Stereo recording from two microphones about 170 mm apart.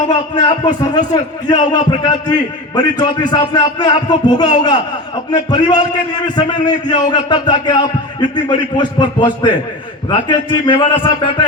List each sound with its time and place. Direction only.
0.1 s a man's voice: 25° left (ahead or behind)